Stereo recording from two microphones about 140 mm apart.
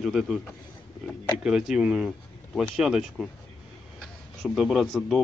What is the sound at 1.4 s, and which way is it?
A man's voice, 5° right (ahead or behind).